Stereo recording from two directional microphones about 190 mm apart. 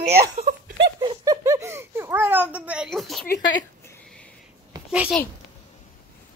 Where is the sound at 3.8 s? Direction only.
5° left (ahead or behind).